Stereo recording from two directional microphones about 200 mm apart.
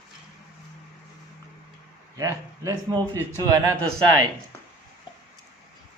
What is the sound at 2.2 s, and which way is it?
Speech, 15° right (ahead or behind).